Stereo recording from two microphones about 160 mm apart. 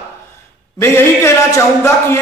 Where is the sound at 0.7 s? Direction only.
15° left (ahead or behind).